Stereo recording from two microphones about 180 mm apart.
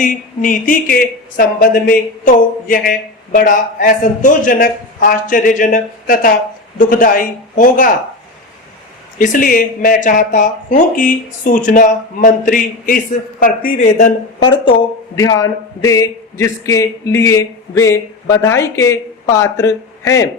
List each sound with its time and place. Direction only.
0.0 s speech: 45° left (ahead or behind)
9.1 s speech: 50° left (ahead or behind)
14.3 s a man's voice: 30° left (ahead or behind)